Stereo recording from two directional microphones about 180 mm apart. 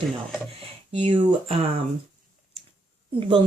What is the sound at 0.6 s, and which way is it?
Speech, 30° right (ahead or behind).